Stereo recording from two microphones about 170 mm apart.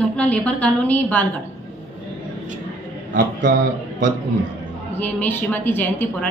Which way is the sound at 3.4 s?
90° right.